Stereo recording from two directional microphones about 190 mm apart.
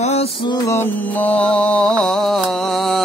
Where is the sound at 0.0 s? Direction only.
35° left (ahead or behind).